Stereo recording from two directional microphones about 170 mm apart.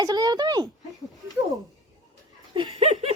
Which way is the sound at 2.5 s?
30° right (ahead or behind).